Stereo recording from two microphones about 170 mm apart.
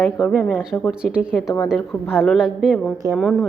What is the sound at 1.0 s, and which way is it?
A woman's voice, 5° right (ahead or behind).